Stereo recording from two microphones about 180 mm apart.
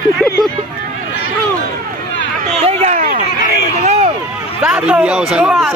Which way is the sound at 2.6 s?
40° right (ahead or behind).